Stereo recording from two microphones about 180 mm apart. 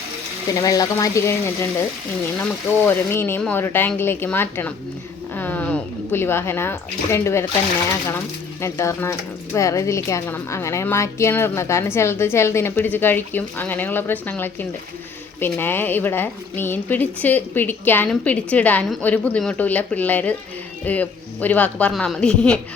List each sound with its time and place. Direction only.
0.5 s speech: 20° left (ahead or behind)
2.4 s speech: 10° left (ahead or behind)
8.6 s speech: 15° left (ahead or behind)